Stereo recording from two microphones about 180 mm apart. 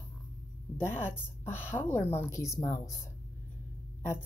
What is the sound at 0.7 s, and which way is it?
Speech, 15° left (ahead or behind).